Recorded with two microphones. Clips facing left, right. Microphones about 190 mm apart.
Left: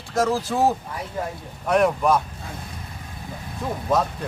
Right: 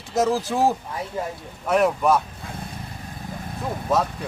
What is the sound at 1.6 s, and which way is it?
Speech, 5° right (ahead or behind).